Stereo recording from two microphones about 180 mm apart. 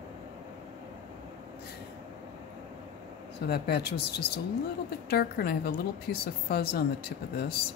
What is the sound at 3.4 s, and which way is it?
Speech, 65° left (ahead or behind).